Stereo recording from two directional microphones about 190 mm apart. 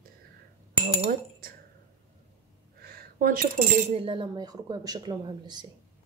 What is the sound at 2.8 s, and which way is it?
Speech, 50° right (ahead or behind).